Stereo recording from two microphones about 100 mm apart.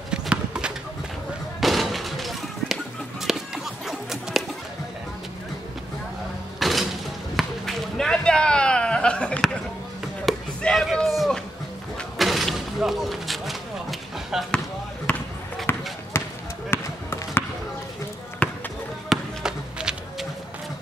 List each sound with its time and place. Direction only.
0.1 s clip-clop: 10° right (ahead or behind)
1.6 s music: centre (ahead or behind)
6.6 s music: centre (ahead or behind)
7.3 s a sound: 5° left (ahead or behind)
10.2 s chop: 5° left (ahead or behind)
12.2 s a sound: centre (ahead or behind)
15.1 s basketball bounce: 15° left (ahead or behind)
18.4 s basketball bounce: 15° left (ahead or behind)
19.0 s basketball bounce: 5° right (ahead or behind)